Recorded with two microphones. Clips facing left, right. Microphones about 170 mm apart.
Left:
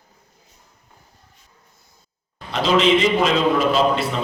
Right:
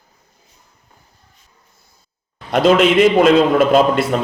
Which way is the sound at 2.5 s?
55° right (ahead or behind).